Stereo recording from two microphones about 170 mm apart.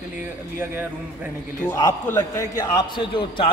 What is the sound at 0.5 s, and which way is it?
Speech, 15° right (ahead or behind).